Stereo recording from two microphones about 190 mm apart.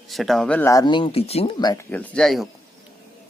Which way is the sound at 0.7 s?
20° left (ahead or behind).